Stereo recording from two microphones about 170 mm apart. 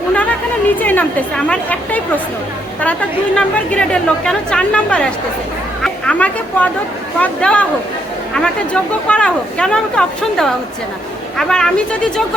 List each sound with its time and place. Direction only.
0.1 s a sound: 10° left (ahead or behind)
0.8 s a woman's voice: 10° left (ahead or behind)
3.3 s a woman's voice: 5° left (ahead or behind)